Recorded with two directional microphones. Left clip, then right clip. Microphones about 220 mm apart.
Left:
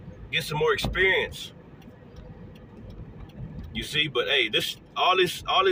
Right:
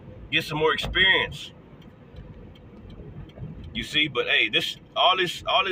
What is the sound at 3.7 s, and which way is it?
A man's voice, 20° right (ahead or behind).